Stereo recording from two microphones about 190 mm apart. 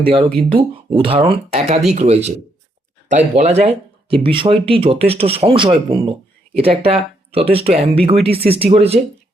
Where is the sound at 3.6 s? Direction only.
30° right (ahead or behind).